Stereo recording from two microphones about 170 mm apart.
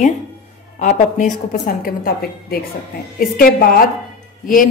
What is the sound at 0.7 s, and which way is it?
A woman's voice, 45° left (ahead or behind).